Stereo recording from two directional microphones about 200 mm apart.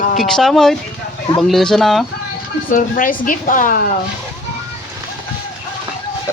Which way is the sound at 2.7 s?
45° left (ahead or behind).